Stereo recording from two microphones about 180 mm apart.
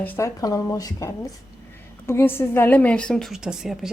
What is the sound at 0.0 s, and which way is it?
A woman's voice, 15° left (ahead or behind).